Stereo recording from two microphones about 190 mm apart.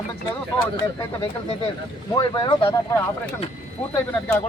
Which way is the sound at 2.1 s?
25° left (ahead or behind).